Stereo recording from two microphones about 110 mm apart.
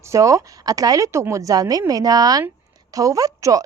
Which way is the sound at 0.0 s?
30° right (ahead or behind).